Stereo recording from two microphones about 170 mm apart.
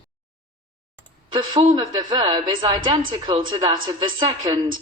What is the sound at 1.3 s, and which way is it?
A woman's voice, 30° right (ahead or behind).